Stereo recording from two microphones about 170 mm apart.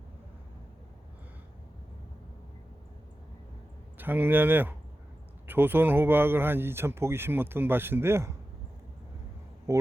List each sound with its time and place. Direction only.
3.9 s speech: 10° right (ahead or behind)
9.7 s speech: 15° right (ahead or behind)